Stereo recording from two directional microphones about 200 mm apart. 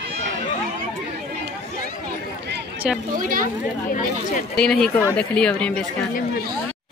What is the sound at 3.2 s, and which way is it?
Speech, 45° right (ahead or behind).